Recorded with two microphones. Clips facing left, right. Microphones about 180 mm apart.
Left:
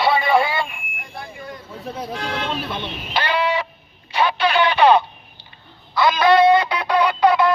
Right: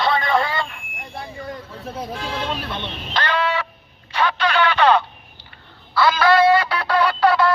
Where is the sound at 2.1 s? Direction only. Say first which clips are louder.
Left 3 dB; 60° left (ahead or behind).